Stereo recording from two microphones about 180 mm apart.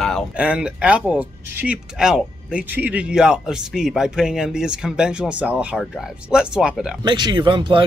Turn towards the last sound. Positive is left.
turn(degrees=-25)  # may be behind; listen again after turning